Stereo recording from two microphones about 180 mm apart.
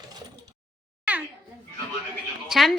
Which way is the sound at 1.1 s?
10° right (ahead or behind).